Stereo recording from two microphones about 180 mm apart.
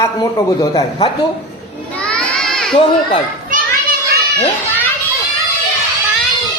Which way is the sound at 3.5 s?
45° right (ahead or behind).